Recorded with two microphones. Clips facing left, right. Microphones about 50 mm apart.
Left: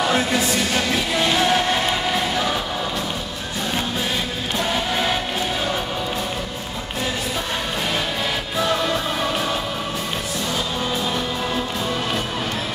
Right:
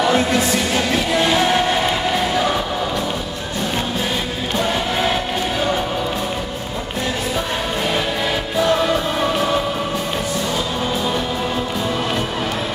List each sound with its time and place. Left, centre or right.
0.0 s music: centre
4.6 s music: centre
8.5 s music: centre